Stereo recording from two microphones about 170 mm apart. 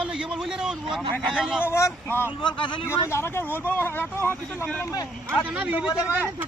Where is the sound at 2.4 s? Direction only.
30° left (ahead or behind).